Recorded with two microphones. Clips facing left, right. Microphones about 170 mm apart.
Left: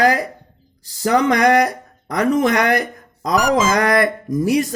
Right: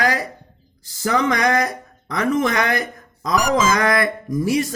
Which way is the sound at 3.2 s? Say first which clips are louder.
Left 2 dB; 40° left (ahead or behind).